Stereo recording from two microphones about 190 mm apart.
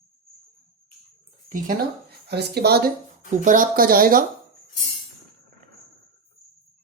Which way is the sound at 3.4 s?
45° right (ahead or behind).